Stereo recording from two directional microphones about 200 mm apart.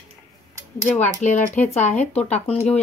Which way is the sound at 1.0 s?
35° left (ahead or behind).